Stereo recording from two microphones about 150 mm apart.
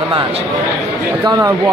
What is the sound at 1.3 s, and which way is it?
Speech, 25° right (ahead or behind).